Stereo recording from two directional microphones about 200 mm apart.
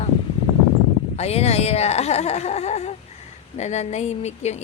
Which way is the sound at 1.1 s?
30° left (ahead or behind).